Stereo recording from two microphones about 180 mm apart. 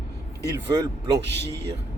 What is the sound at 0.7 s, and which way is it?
Speech, 20° right (ahead or behind).